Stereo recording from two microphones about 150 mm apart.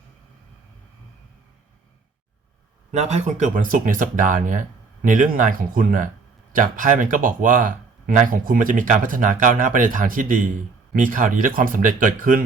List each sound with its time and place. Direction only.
2.9 s speech: 50° right (ahead or behind)